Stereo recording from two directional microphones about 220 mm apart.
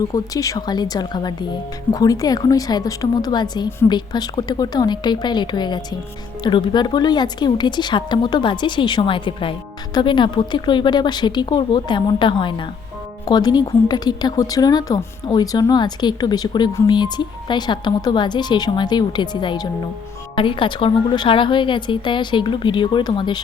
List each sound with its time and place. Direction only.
0.1 s a woman's voice: 15° left (ahead or behind)